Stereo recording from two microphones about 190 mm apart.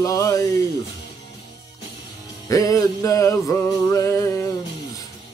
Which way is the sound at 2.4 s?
15° left (ahead or behind).